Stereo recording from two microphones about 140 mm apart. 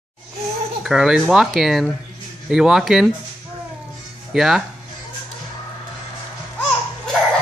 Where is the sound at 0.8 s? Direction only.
5° right (ahead or behind).